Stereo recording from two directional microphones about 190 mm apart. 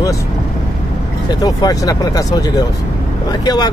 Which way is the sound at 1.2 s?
20° left (ahead or behind).